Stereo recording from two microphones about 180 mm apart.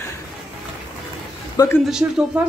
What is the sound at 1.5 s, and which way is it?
Speech, 15° left (ahead or behind).